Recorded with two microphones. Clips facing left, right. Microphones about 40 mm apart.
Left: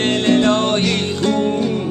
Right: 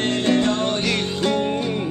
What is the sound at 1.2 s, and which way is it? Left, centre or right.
Music, centre.